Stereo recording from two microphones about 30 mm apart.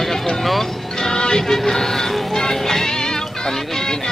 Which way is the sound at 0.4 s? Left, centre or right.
Centre.